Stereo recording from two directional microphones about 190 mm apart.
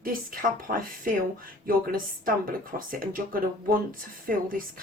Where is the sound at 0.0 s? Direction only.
50° right (ahead or behind).